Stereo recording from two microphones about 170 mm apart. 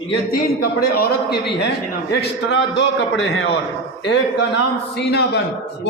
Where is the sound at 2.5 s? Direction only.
90° left.